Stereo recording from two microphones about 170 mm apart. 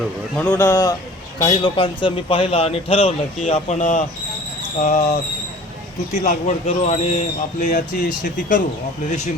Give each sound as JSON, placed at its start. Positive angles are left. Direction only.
{"t": 0.4, "sound": "a man's voice", "side_deg": 15}
{"t": 1.4, "sound": "a man's voice", "side_deg": 25}
{"t": 6.7, "sound": "speech", "side_deg": 40}